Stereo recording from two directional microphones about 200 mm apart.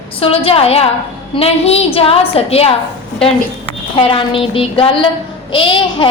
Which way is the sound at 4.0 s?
25° left (ahead or behind).